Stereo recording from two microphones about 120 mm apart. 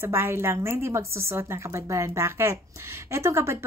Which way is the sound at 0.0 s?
20° right (ahead or behind).